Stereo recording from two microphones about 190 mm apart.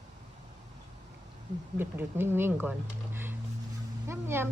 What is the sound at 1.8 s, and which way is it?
Speech, 10° right (ahead or behind).